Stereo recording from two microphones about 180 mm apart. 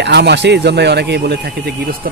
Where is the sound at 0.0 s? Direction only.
70° right (ahead or behind).